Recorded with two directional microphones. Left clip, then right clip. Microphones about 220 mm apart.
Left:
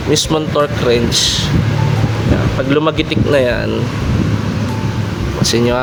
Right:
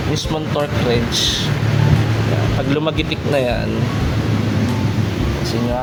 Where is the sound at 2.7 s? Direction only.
20° left (ahead or behind).